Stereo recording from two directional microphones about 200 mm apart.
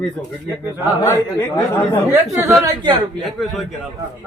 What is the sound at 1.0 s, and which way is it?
Speech, 10° left (ahead or behind).